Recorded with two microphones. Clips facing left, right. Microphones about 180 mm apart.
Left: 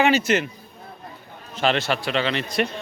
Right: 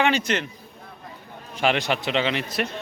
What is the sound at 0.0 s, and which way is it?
Speech, 5° left (ahead or behind).